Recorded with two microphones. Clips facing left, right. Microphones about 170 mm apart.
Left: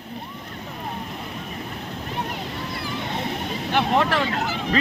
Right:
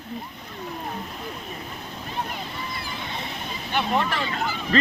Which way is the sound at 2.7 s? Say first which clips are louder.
Left 5 dB; 65° left (ahead or behind).